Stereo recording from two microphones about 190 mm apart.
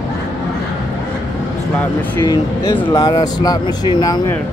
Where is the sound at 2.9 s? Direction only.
20° left (ahead or behind).